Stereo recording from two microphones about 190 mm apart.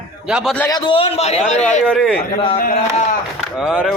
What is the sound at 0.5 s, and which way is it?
Speech, 10° left (ahead or behind).